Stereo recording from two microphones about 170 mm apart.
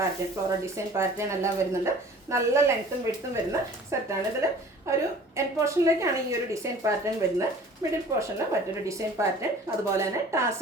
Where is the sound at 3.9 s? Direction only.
15° right (ahead or behind).